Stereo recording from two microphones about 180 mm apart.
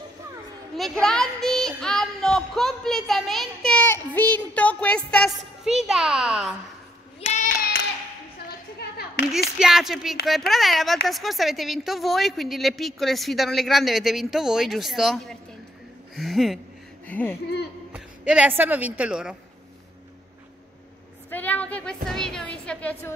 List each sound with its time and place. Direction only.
0.7 s a woman's voice: centre (ahead or behind)
7.2 s child singing: 40° left (ahead or behind)
9.6 s a woman's voice: centre (ahead or behind)
17.9 s a woman's voice: 5° right (ahead or behind)
21.3 s music: 10° left (ahead or behind)